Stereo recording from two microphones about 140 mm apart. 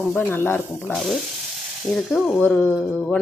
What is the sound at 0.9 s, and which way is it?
Speech, centre (ahead or behind).